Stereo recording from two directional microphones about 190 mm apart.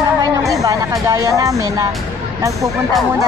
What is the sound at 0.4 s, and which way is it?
Speech, 15° right (ahead or behind).